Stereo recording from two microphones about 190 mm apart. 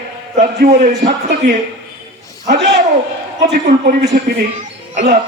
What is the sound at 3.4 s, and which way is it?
Speech, 45° right (ahead or behind).